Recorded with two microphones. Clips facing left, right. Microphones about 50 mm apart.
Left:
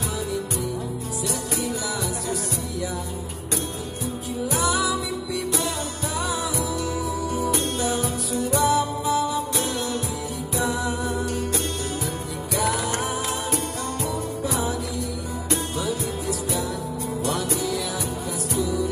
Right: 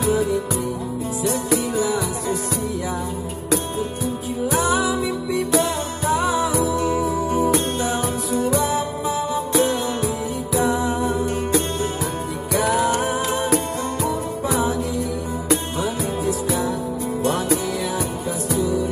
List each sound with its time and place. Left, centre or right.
1.8 s music: right
4.6 s music: right
10.6 s music: right
12.6 s music: right